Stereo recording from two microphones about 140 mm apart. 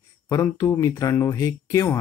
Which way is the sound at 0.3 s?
20° left (ahead or behind).